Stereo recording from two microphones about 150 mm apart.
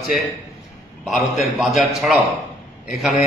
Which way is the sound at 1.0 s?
Centre (ahead or behind).